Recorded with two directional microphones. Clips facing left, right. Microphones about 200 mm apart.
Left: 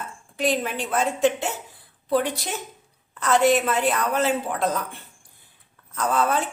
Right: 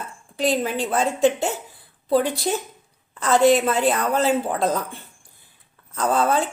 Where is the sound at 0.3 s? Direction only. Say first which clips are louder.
Right 2 dB; 30° right (ahead or behind).